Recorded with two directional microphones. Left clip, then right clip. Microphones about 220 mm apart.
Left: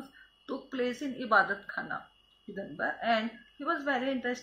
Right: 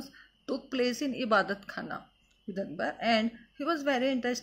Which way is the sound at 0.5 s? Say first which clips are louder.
Right 3 dB; 45° right (ahead or behind).